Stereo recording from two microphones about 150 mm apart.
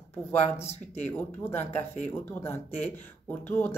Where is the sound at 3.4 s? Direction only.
15° left (ahead or behind).